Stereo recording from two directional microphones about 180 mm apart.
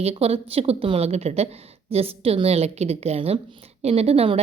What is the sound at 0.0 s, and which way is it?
Speech, 35° right (ahead or behind).